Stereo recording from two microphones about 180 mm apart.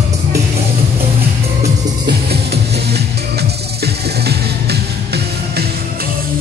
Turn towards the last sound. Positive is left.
turn(degrees=-65)  # may be behind; listen again after turning